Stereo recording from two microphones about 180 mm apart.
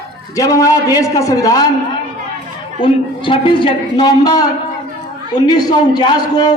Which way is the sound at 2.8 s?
30° left (ahead or behind).